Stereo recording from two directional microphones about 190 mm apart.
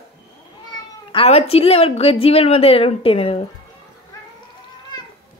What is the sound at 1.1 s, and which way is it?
A woman's voice, 30° left (ahead or behind).